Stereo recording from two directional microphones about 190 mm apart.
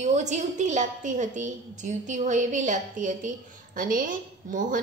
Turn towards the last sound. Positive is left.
turn(degrees=-45)  # may be behind; listen again after turning